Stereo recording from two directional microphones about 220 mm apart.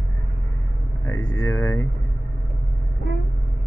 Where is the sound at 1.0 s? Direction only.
65° left (ahead or behind).